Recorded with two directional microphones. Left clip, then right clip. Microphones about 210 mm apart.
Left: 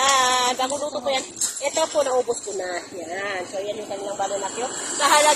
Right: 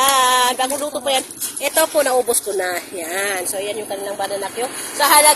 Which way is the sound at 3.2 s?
60° right (ahead or behind).